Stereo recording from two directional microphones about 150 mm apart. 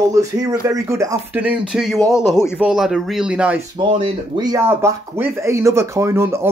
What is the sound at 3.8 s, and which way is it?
Speech, 30° right (ahead or behind).